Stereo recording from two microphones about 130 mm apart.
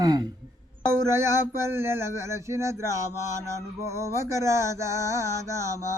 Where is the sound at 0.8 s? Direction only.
20° right (ahead or behind).